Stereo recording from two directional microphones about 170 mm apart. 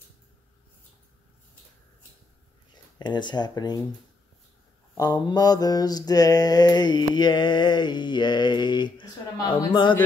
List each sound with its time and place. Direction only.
2.7 s speech: 25° left (ahead or behind)
4.9 s mantra: 25° left (ahead or behind)